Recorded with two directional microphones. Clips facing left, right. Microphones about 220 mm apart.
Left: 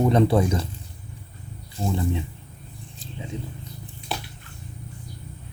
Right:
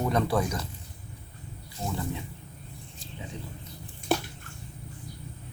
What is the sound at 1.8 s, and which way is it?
Speech, 25° left (ahead or behind).